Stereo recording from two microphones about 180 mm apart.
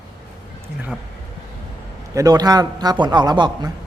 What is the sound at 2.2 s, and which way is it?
A man's voice, 20° right (ahead or behind).